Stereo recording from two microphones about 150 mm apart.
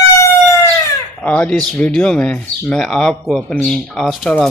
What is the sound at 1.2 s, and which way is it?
Speech, 10° left (ahead or behind).